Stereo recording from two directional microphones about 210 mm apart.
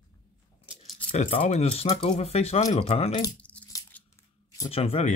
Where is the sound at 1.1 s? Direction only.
30° left (ahead or behind).